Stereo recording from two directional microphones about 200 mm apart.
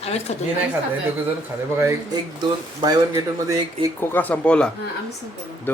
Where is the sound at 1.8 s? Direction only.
15° right (ahead or behind).